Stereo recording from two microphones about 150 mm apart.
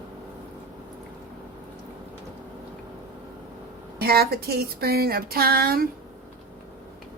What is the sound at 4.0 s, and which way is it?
Speech, 90° right.